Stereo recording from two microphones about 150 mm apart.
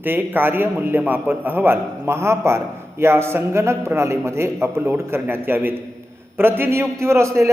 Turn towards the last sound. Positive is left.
turn(degrees=-20)  # may be behind; listen again after turning